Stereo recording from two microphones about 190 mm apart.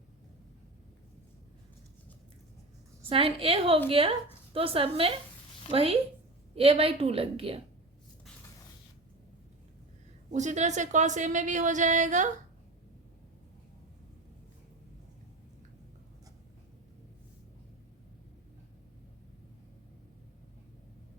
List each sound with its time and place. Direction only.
3.1 s a woman's voice: 30° right (ahead or behind)
10.3 s a woman's voice: 40° right (ahead or behind)